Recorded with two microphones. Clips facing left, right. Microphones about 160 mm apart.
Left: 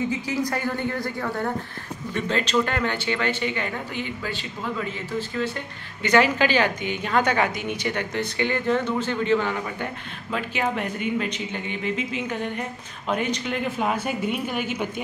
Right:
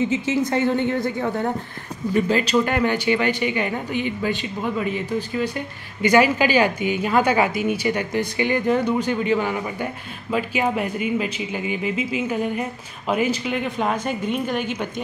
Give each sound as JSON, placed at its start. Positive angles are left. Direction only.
{"t": 0.1, "sound": "a woman's voice", "side_deg": -25}
{"t": 2.1, "sound": "a woman's voice", "side_deg": -10}